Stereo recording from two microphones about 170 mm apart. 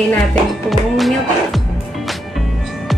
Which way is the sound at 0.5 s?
Centre (ahead or behind).